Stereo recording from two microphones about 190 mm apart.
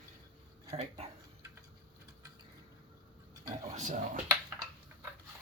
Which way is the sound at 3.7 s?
40° right (ahead or behind).